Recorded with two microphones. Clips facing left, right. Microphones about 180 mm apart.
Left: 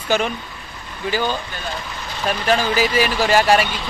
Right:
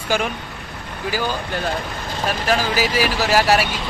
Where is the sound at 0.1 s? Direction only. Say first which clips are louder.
Left 2 dB; 10° right (ahead or behind).